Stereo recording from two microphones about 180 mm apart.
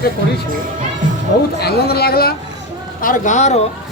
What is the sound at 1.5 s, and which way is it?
Speech, 60° left (ahead or behind).